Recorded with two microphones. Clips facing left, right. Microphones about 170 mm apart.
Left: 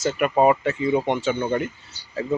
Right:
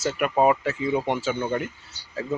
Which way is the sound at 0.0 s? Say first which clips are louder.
Left 2 dB; 5° right (ahead or behind).